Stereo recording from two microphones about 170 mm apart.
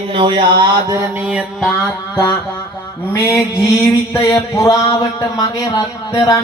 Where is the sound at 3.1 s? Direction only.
15° left (ahead or behind).